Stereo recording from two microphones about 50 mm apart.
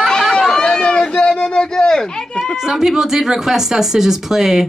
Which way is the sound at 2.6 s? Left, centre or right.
Centre.